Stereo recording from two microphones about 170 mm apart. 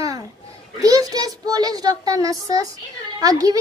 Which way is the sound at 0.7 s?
20° right (ahead or behind).